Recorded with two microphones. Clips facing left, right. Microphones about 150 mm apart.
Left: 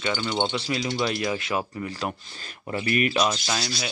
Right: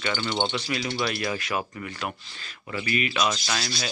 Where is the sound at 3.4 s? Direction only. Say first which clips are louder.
Left 1 dB; 15° left (ahead or behind).